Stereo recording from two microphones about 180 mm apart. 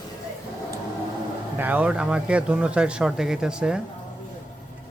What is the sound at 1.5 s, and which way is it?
Speech, 10° right (ahead or behind).